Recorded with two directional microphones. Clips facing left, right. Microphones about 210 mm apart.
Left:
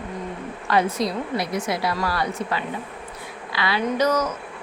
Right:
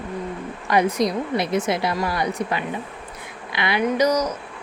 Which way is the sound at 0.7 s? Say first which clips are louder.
Right 2 dB; 15° right (ahead or behind).